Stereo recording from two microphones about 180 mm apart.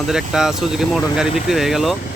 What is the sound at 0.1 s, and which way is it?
Speech, 5° right (ahead or behind).